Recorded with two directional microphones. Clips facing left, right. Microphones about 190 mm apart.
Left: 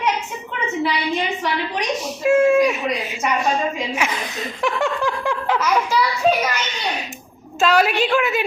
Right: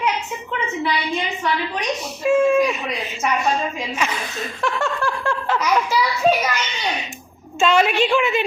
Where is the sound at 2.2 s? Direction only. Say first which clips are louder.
Left 1 dB; 10° left (ahead or behind).